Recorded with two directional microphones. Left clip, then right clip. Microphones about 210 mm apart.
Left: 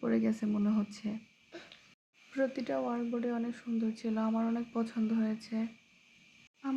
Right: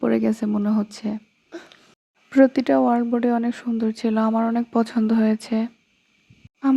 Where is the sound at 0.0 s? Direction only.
40° right (ahead or behind).